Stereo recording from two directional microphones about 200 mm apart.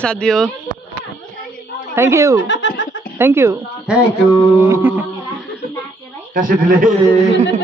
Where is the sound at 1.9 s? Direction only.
15° right (ahead or behind).